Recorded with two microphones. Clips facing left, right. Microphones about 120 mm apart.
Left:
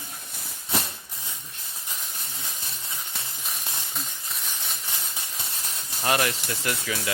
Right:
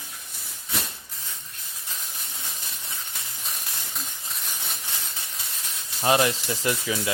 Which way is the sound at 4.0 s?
Centre (ahead or behind).